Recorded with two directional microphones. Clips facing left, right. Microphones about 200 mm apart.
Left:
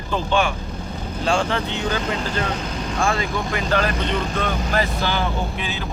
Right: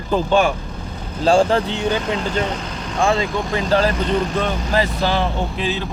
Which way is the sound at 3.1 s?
25° right (ahead or behind).